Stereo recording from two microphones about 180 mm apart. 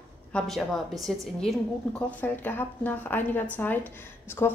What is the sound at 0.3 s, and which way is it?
A woman's voice, 5° left (ahead or behind).